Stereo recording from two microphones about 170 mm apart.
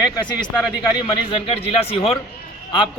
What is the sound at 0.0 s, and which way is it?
Speech, 25° left (ahead or behind).